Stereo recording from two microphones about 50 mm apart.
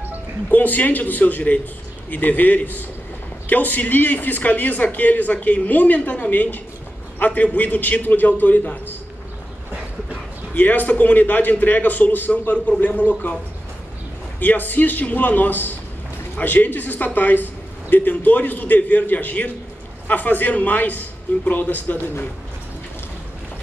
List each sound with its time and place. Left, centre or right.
0.5 s a man's voice: left
10.5 s speech: left
14.4 s speech: left